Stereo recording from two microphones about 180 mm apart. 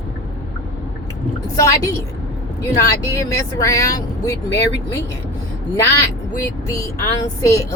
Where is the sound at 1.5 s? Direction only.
20° left (ahead or behind).